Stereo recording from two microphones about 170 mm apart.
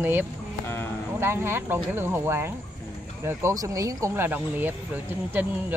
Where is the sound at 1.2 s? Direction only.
15° right (ahead or behind).